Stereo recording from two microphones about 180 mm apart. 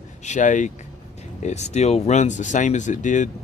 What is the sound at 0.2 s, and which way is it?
Speech, 40° left (ahead or behind).